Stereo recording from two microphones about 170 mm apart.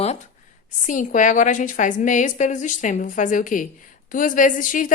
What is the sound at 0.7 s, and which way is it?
A woman's voice, 50° left (ahead or behind).